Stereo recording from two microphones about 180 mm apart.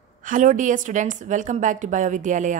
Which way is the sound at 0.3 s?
45° right (ahead or behind).